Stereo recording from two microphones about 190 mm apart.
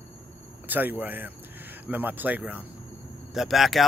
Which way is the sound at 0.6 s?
10° right (ahead or behind).